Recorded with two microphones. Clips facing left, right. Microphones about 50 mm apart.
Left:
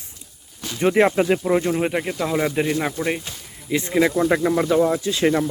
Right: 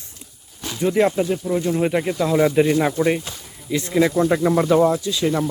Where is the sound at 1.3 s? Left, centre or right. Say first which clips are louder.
Left 3 dB; left.